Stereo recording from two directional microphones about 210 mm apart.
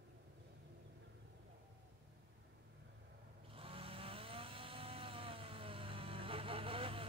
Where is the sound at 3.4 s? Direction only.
25° right (ahead or behind).